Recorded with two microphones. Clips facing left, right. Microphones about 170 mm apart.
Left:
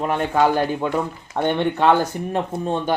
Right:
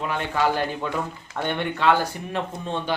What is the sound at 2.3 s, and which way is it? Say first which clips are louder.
Speech: left 6 dB; 45° left (ahead or behind).